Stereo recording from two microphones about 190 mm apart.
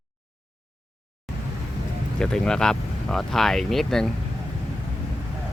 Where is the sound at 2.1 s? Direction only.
5° left (ahead or behind).